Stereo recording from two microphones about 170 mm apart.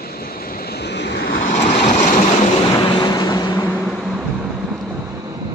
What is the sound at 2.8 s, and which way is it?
Vehicle, 25° left (ahead or behind).